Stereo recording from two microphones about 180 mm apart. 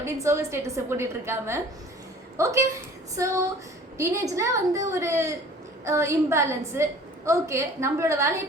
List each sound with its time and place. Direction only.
0.0 s a woman's voice: 15° right (ahead or behind)